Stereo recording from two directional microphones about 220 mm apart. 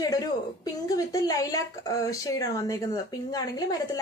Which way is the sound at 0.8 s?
15° left (ahead or behind).